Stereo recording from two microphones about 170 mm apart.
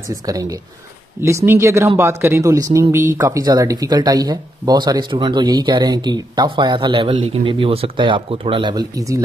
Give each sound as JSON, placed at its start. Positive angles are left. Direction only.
{"t": 0.1, "sound": "speech", "side_deg": -20}